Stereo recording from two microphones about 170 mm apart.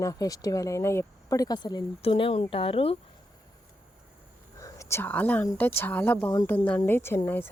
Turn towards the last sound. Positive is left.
turn(degrees=10)  # may be behind; listen again after turning